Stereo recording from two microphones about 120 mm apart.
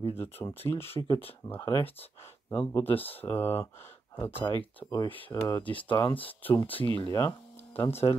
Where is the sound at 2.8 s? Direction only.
50° left (ahead or behind).